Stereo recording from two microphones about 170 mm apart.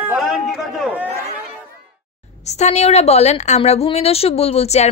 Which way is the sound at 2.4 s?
40° left (ahead or behind).